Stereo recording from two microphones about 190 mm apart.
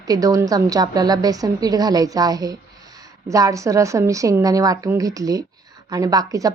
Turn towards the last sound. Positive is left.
turn(degrees=-20)  # may be behind; listen again after turning